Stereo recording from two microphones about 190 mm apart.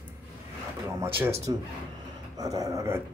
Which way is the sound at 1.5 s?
20° right (ahead or behind).